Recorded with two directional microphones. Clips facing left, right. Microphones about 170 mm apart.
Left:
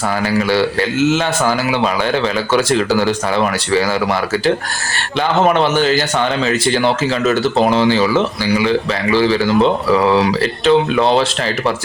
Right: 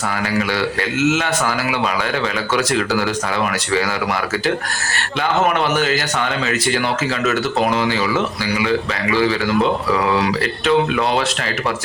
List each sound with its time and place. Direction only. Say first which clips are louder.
0.5 s speech: left 5 dB; 30° left (ahead or behind)